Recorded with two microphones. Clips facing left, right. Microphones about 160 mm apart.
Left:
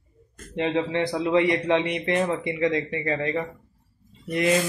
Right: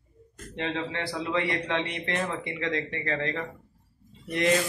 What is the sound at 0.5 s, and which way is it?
A man's voice, 20° left (ahead or behind).